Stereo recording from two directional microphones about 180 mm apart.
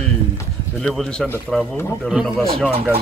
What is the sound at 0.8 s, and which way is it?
Speech, centre (ahead or behind).